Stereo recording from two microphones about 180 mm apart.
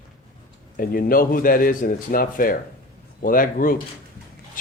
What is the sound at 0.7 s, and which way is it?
Speech, 55° left (ahead or behind).